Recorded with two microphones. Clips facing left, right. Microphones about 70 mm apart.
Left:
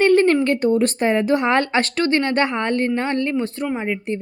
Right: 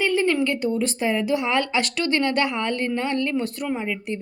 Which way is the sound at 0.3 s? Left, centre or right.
Left.